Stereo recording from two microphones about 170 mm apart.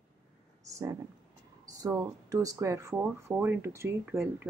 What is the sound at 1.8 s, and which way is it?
Speech, 20° right (ahead or behind).